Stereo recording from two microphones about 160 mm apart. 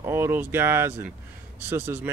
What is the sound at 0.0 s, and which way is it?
Speech, 15° right (ahead or behind).